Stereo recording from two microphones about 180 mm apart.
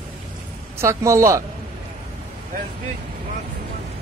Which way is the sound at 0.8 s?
15° right (ahead or behind).